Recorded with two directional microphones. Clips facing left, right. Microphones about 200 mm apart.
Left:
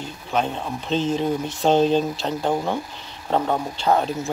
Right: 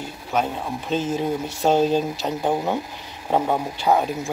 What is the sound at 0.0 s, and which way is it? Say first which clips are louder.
Speech: even; 10° right (ahead or behind).